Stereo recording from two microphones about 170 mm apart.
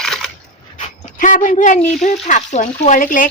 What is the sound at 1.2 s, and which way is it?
A woman's voice, 50° left (ahead or behind).